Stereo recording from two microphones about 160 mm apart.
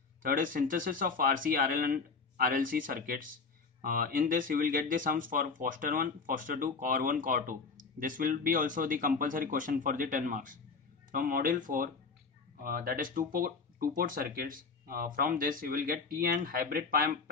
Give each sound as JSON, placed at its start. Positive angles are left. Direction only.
{"t": 0.2, "sound": "speech", "side_deg": -60}